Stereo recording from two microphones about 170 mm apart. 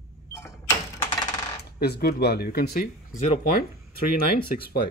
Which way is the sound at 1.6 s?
70° left (ahead or behind).